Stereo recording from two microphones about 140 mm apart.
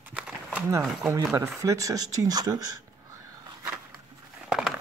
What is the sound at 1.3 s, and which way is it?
Speech, 25° right (ahead or behind).